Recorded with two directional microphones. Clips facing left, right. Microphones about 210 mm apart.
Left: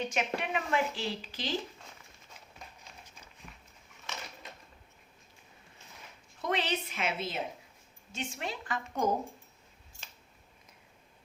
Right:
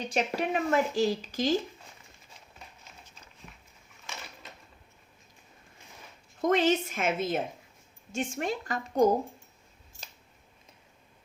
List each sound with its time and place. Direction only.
0.0 s a woman's voice: 35° right (ahead or behind)
6.4 s a woman's voice: 45° right (ahead or behind)